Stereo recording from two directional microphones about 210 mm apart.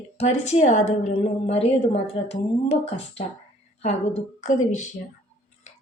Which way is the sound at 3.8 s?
30° left (ahead or behind).